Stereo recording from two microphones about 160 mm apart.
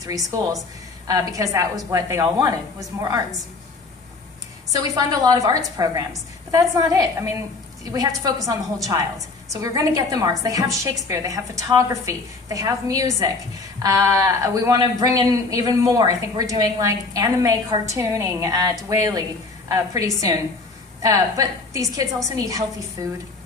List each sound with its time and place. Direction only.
0.0 s a man's voice: 20° right (ahead or behind)
4.7 s a man's voice: 25° right (ahead or behind)